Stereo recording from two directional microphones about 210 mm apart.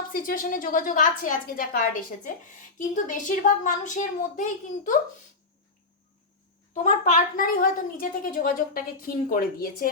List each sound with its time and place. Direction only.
0.1 s a woman's voice: 45° left (ahead or behind)
6.8 s a woman's voice: 35° left (ahead or behind)